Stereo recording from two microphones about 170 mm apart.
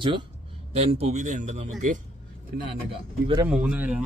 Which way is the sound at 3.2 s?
20° right (ahead or behind).